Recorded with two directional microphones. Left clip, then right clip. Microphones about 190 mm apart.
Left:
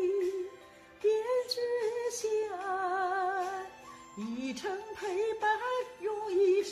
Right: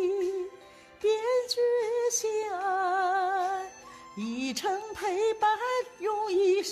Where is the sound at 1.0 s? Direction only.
55° right (ahead or behind).